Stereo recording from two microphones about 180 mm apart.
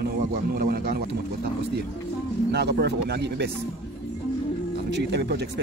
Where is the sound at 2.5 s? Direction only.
65° right (ahead or behind).